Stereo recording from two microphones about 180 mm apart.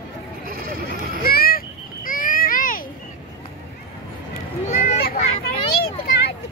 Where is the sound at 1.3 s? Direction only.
55° left (ahead or behind).